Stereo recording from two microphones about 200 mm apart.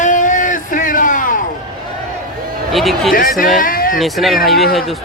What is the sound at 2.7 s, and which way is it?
Speech, centre (ahead or behind).